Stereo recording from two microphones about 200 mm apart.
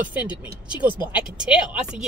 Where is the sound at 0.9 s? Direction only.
25° left (ahead or behind).